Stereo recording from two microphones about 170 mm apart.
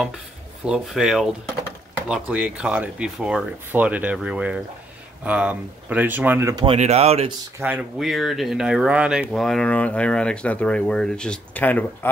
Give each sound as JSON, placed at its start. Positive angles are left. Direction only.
{"t": 0.7, "sound": "speech", "side_deg": -5}
{"t": 6.5, "sound": "speech", "side_deg": -35}
{"t": 7.6, "sound": "speech", "side_deg": -5}